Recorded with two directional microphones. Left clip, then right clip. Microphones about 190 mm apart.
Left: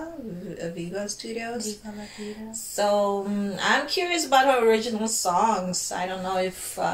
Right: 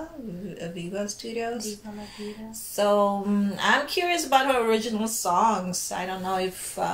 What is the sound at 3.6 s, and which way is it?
Speech, 15° right (ahead or behind).